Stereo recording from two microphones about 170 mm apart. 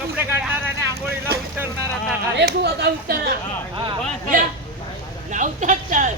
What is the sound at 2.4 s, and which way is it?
Speech, 75° right (ahead or behind).